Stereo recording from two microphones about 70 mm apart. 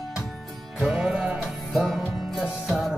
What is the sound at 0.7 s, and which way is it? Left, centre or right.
Music, centre.